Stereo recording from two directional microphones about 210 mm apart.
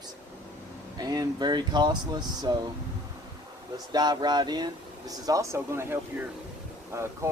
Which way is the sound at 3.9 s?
20° right (ahead or behind).